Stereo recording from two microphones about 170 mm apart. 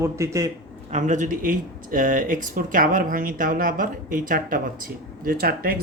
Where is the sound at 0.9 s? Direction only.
45° right (ahead or behind).